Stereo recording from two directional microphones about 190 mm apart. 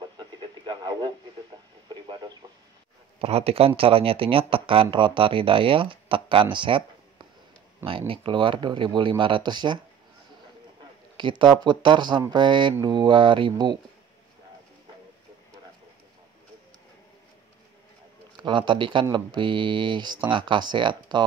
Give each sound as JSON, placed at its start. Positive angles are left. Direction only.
{"t": 0.4, "sound": "radio", "side_deg": -25}
{"t": 3.2, "sound": "speech", "side_deg": -30}
{"t": 11.1, "sound": "speech", "side_deg": -25}
{"t": 18.3, "sound": "speech", "side_deg": -25}